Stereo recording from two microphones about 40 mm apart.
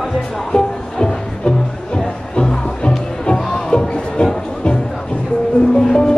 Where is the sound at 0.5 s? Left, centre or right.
Centre.